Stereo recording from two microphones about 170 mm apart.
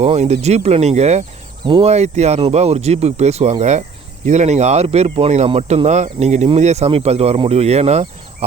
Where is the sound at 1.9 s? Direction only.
40° right (ahead or behind).